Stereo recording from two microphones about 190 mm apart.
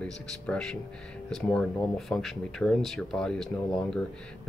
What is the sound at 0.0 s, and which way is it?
Speech, 5° left (ahead or behind).